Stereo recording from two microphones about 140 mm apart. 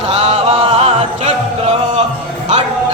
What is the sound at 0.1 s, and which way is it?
Music, 45° right (ahead or behind).